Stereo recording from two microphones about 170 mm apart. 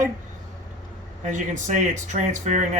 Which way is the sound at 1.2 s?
45° right (ahead or behind).